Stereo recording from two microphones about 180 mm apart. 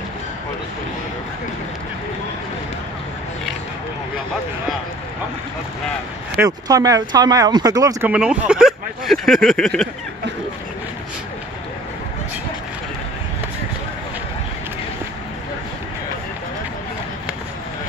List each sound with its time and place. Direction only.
6.3 s speech: 15° right (ahead or behind)
8.1 s speech: 5° right (ahead or behind)